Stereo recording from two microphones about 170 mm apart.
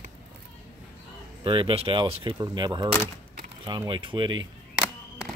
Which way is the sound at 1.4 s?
30° right (ahead or behind).